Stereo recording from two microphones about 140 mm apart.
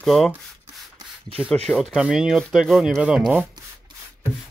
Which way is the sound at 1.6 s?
Centre (ahead or behind).